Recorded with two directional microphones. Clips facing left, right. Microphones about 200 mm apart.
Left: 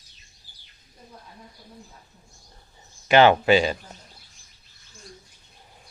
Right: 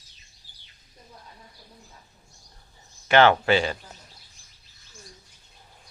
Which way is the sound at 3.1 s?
15° left (ahead or behind).